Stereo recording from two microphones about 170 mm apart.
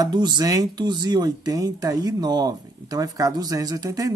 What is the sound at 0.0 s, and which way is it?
Speech, 25° right (ahead or behind).